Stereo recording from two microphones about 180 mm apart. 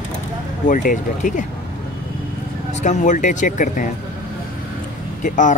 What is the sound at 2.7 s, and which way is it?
Speech, 40° left (ahead or behind).